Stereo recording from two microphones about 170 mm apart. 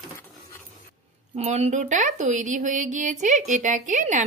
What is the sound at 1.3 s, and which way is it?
A woman's voice, 40° right (ahead or behind).